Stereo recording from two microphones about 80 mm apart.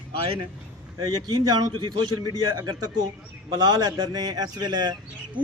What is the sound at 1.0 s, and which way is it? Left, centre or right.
A man's voice, right.